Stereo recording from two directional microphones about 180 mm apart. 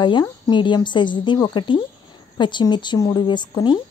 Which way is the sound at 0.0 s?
25° left (ahead or behind).